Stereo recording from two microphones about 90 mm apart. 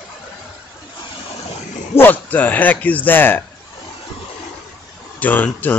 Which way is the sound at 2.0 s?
20° left (ahead or behind).